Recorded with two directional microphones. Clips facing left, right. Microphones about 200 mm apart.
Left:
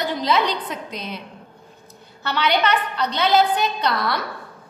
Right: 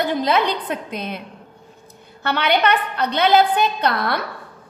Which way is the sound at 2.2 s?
55° right (ahead or behind).